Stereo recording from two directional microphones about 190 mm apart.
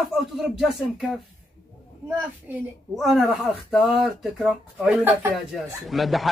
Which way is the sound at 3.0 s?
Centre (ahead or behind).